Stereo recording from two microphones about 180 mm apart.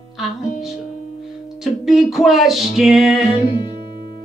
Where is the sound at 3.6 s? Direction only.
25° left (ahead or behind).